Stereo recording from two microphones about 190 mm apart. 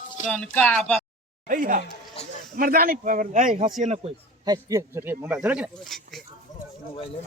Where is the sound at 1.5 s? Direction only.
45° right (ahead or behind).